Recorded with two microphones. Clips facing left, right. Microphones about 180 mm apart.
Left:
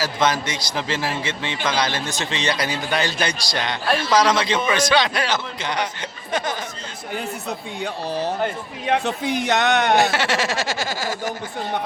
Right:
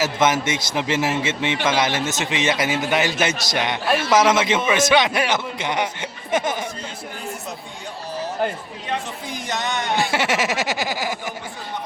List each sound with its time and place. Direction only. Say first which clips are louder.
0.0 s a man's voice: right 2 dB; 20° right (ahead or behind)
8.9 s a man's voice: left 7 dB; 65° left (ahead or behind)
10.1 s speech: right 1 dB; 20° right (ahead or behind)